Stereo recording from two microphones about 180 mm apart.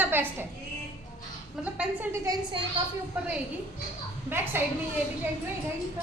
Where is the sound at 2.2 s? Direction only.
20° right (ahead or behind).